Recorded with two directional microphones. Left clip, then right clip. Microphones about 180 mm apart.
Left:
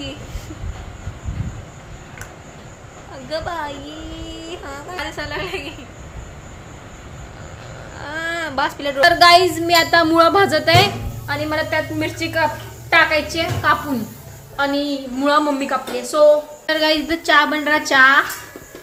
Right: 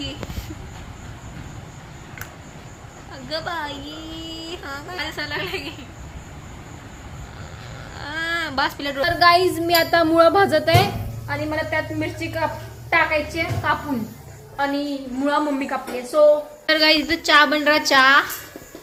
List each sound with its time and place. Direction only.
3.2 s a woman's voice: 5° left (ahead or behind)
7.9 s whimper: centre (ahead or behind)
9.1 s speech: 20° left (ahead or behind)
9.4 s a woman's voice: centre (ahead or behind)